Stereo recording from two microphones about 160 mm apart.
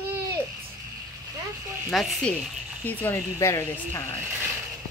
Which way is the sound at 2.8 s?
15° left (ahead or behind).